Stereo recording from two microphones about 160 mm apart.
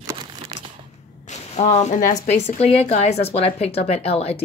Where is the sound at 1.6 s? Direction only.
45° left (ahead or behind).